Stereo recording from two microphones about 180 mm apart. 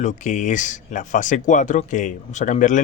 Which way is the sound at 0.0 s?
45° left (ahead or behind).